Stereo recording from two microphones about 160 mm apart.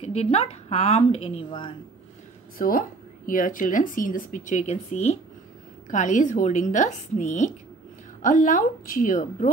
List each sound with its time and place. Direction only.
0.1 s speech: 40° left (ahead or behind)
2.6 s speech: 65° left (ahead or behind)